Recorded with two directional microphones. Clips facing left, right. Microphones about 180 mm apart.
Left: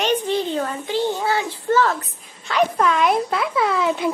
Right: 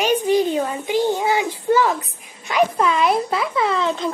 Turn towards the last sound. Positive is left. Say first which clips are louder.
# even
turn(degrees=10)  # may be behind; listen again after turning